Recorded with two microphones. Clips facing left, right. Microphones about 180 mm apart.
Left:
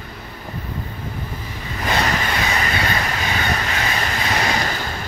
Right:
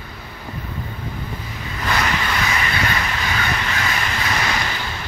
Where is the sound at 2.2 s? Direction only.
40° left (ahead or behind).